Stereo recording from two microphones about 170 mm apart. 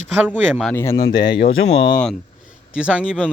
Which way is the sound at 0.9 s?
75° left (ahead or behind).